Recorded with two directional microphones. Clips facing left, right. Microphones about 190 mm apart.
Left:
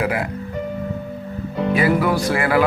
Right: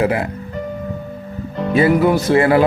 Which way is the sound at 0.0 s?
25° right (ahead or behind).